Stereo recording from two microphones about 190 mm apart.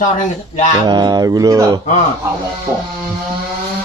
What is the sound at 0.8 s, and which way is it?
Speech, 20° right (ahead or behind).